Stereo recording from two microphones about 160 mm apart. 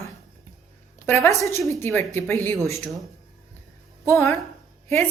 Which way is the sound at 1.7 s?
15° left (ahead or behind).